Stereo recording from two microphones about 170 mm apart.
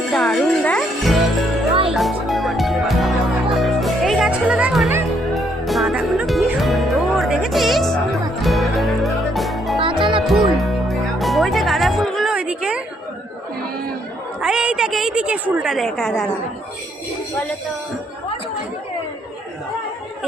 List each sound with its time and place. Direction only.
0.1 s music: centre (ahead or behind)
9.8 s music: 30° right (ahead or behind)
10.2 s music: centre (ahead or behind)
14.4 s a sound: 5° right (ahead or behind)
15.5 s a woman's voice: centre (ahead or behind)